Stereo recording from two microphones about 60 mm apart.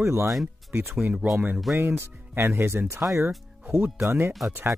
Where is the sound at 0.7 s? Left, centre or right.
Right.